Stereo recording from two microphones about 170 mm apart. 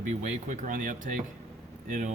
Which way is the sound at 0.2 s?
45° right (ahead or behind).